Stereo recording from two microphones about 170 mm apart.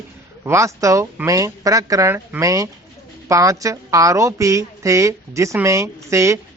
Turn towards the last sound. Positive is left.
turn(degrees=-15)  # may be behind; listen again after turning